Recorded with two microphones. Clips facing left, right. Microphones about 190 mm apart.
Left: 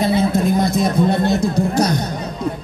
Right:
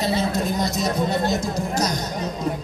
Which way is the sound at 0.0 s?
55° left (ahead or behind).